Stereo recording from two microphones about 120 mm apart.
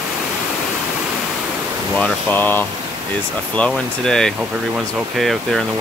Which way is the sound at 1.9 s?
10° left (ahead or behind).